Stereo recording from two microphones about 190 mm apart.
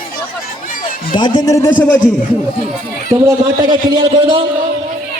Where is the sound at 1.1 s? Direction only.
25° left (ahead or behind).